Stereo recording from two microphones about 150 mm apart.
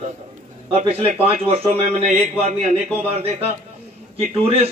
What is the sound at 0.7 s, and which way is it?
A man's voice, 40° right (ahead or behind).